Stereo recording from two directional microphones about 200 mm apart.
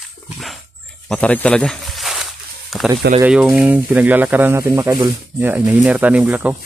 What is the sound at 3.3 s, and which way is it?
Speech, 5° right (ahead or behind).